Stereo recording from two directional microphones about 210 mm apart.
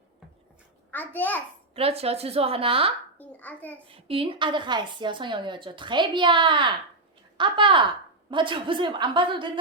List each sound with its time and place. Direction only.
0.9 s a child's voice: 10° left (ahead or behind)
1.7 s speech: 30° right (ahead or behind)
3.2 s a child's voice: 10° left (ahead or behind)
3.8 s speech: 25° right (ahead or behind)